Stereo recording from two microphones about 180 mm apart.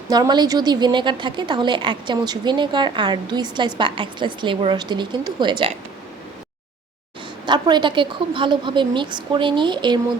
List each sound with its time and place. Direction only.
0.1 s a woman's voice: 20° right (ahead or behind)
7.4 s a woman's voice: 25° right (ahead or behind)